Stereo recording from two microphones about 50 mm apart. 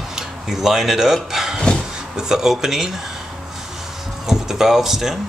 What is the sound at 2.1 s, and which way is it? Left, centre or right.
Speech, centre.